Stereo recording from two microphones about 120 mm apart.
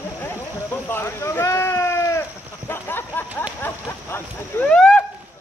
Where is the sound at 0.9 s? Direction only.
20° left (ahead or behind).